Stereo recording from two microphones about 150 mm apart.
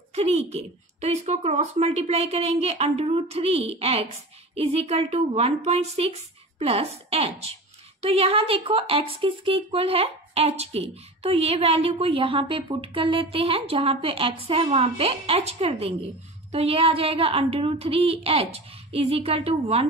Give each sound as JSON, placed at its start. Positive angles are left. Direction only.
{"t": 0.1, "sound": "speech", "side_deg": -45}